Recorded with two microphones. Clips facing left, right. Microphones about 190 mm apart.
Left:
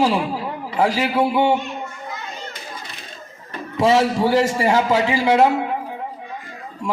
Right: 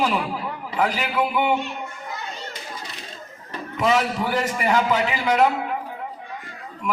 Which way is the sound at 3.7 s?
30° left (ahead or behind).